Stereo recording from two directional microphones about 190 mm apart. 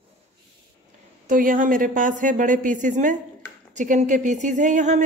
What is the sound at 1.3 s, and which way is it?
A woman's voice, 45° right (ahead or behind).